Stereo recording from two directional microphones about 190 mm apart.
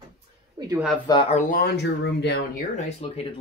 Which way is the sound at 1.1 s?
25° left (ahead or behind).